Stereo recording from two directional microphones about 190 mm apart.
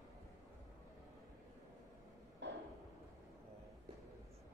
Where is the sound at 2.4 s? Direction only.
65° right (ahead or behind).